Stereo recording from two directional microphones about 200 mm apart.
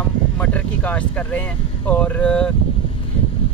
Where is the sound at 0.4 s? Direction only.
5° left (ahead or behind).